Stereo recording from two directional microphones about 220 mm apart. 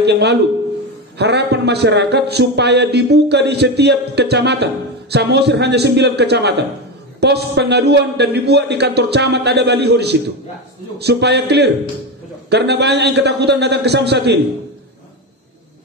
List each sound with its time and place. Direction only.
0.0 s a man's voice: 50° right (ahead or behind)